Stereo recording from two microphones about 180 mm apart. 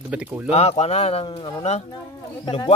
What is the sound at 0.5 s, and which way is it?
A man's voice, 35° left (ahead or behind).